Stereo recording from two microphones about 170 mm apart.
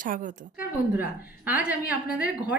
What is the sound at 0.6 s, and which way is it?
A woman's voice, 10° right (ahead or behind).